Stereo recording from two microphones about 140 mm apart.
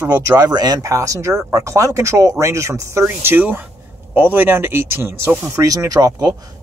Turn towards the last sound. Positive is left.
turn(degrees=-25)  # may be behind; listen again after turning